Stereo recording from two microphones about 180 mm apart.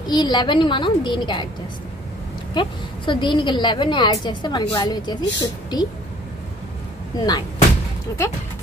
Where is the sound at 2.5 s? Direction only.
25° left (ahead or behind).